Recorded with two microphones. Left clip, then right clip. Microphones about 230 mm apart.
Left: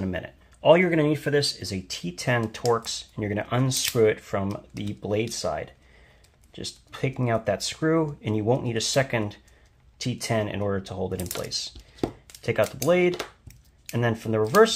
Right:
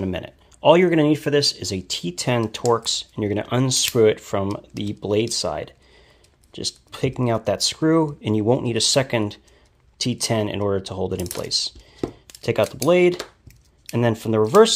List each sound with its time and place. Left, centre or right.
0.0 s speech: right